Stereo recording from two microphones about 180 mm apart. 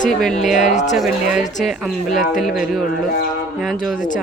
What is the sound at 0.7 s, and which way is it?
Speech, 40° left (ahead or behind).